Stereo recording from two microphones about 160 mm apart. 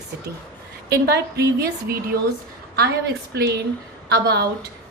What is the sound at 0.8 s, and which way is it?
A woman's voice, 90° right.